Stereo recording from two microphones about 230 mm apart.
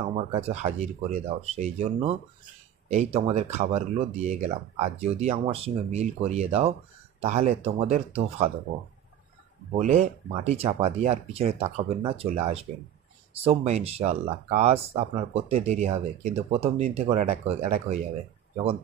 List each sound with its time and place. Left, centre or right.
0.1 s speech: right
9.9 s speech: right